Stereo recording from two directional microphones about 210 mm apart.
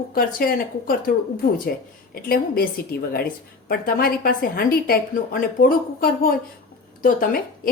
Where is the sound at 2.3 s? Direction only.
45° left (ahead or behind).